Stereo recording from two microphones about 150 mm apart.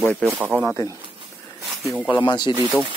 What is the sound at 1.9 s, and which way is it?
Speech, 5° left (ahead or behind).